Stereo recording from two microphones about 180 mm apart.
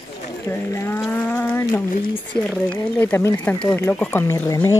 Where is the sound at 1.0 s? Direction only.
10° left (ahead or behind).